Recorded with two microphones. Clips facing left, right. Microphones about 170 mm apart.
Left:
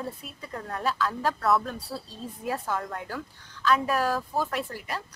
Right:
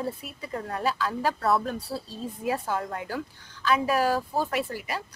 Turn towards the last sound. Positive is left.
turn(degrees=-5)  # may be behind; listen again after turning